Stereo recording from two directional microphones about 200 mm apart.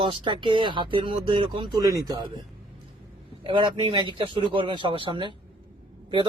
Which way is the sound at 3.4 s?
25° right (ahead or behind).